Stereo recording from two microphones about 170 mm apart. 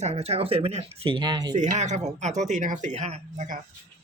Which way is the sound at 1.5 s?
45° right (ahead or behind).